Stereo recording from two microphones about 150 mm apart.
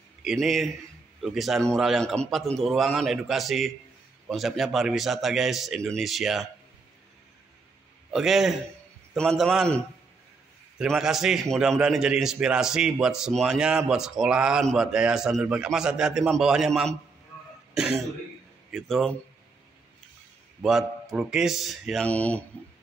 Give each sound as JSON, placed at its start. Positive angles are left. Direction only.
{"t": 0.2, "sound": "a man's voice", "side_deg": 0}
{"t": 8.1, "sound": "a man's voice", "side_deg": -5}
{"t": 10.8, "sound": "a man's voice", "side_deg": -5}
{"t": 20.6, "sound": "a man's voice", "side_deg": 0}